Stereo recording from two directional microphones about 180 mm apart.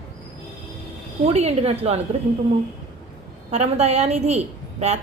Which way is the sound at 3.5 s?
35° right (ahead or behind).